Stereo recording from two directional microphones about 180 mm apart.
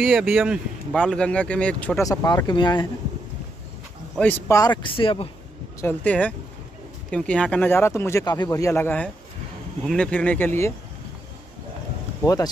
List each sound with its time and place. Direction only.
0.0 s speech: 5° right (ahead or behind)
2.0 s speech: 20° left (ahead or behind)
4.2 s speech: 15° left (ahead or behind); by 5.3 s 30° left (ahead or behind)
5.8 s speech: 10° left (ahead or behind)